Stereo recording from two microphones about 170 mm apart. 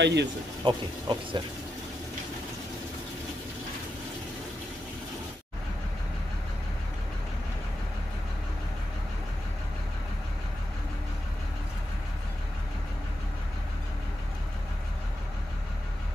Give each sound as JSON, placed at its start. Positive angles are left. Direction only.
{"t": 0.0, "sound": "speech", "side_deg": -90}
{"t": 0.7, "sound": "speech", "side_deg": -25}